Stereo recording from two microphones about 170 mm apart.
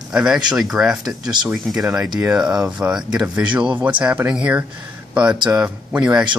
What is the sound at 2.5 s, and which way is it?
Speech, 15° right (ahead or behind).